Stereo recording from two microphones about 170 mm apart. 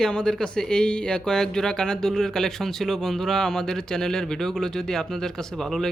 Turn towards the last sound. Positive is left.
turn(degrees=5)  # may be behind; listen again after turning